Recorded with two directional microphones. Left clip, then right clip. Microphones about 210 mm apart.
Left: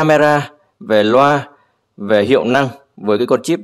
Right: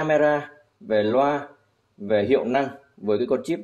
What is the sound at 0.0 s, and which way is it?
A man's voice, 35° left (ahead or behind).